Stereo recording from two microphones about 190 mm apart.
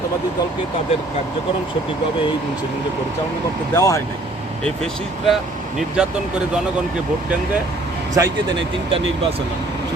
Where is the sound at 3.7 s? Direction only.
15° left (ahead or behind).